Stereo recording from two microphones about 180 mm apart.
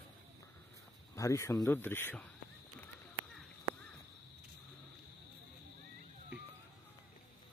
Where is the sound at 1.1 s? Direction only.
15° left (ahead or behind).